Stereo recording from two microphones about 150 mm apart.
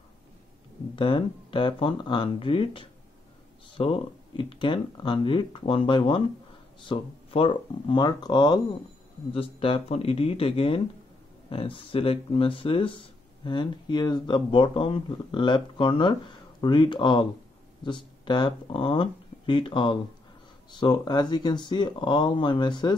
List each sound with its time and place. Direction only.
0.9 s speech: 35° left (ahead or behind)